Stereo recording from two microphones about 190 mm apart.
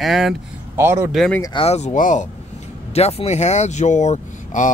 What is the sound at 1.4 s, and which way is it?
Speech, 30° left (ahead or behind).